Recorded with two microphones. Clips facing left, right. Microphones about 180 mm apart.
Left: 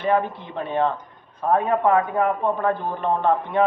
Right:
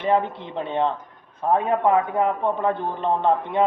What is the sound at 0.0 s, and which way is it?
A man's voice, 20° right (ahead or behind).